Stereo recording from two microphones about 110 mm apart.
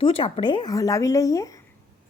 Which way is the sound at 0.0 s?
50° left (ahead or behind).